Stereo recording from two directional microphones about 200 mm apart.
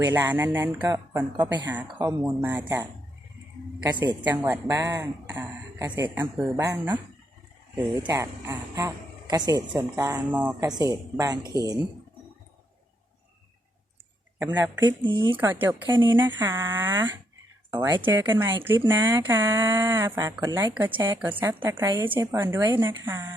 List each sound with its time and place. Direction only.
0.0 s speech: 10° right (ahead or behind)
8.0 s speech: 15° right (ahead or behind)
10.7 s speech: 20° right (ahead or behind)
14.5 s speech: 15° right (ahead or behind)
15.4 s speech: 10° right (ahead or behind)
15.9 s speech: 25° right (ahead or behind)